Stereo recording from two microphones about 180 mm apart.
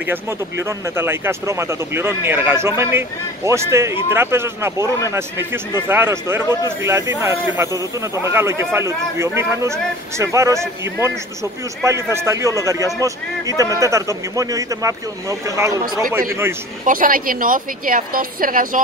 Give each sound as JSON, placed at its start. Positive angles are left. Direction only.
{"t": 0.0, "sound": "speech", "side_deg": -10}
{"t": 16.8, "sound": "a woman's voice", "side_deg": -50}